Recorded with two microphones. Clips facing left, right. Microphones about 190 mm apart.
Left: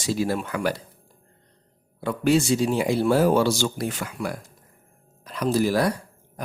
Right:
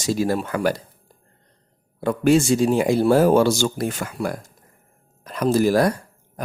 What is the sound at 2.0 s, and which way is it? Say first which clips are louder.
Speech: right 4 dB; 45° right (ahead or behind).